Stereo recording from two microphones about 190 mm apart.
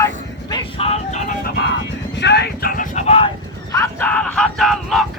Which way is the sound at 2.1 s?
65° left (ahead or behind).